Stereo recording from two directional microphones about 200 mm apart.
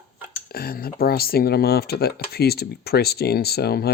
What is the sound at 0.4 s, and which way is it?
Speech, 50° left (ahead or behind).